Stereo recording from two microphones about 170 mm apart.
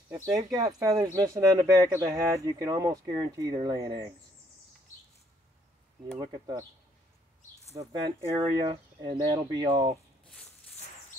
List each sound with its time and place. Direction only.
0.3 s speech: 20° right (ahead or behind)
6.1 s speech: 25° right (ahead or behind)
7.8 s speech: 25° right (ahead or behind)
10.2 s a sound: 5° left (ahead or behind)